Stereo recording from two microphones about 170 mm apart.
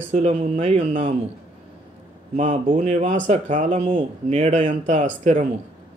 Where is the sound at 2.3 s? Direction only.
45° right (ahead or behind).